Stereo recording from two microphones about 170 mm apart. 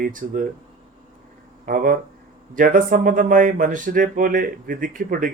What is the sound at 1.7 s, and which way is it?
Speech, 55° right (ahead or behind).